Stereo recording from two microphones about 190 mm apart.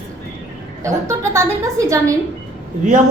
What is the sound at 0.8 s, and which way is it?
A woman's voice, 15° right (ahead or behind).